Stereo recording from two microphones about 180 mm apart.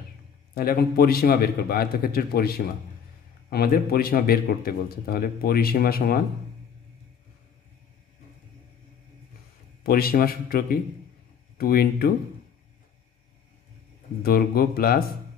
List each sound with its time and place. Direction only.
0.6 s a man's voice: 55° left (ahead or behind)
9.8 s a man's voice: 55° left (ahead or behind)
14.2 s a man's voice: 60° left (ahead or behind)